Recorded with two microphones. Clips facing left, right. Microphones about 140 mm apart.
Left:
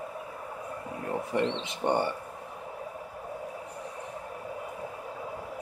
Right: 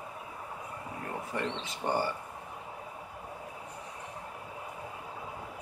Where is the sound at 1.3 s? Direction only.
25° left (ahead or behind).